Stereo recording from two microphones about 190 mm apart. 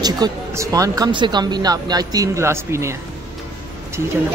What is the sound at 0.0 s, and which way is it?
Speech, 20° right (ahead or behind).